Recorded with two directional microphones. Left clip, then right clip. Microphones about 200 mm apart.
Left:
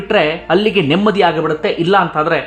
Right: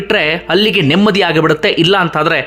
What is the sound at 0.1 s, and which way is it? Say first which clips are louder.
Speech: even; 15° right (ahead or behind).